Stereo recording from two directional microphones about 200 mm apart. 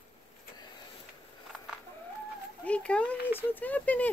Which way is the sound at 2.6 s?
5° left (ahead or behind).